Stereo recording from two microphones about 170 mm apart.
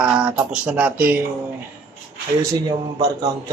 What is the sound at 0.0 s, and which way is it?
A man's voice, 5° right (ahead or behind).